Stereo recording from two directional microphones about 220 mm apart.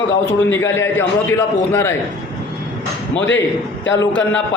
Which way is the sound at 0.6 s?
10° left (ahead or behind).